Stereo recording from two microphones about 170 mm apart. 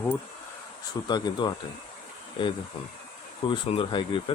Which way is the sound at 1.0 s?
25° left (ahead or behind).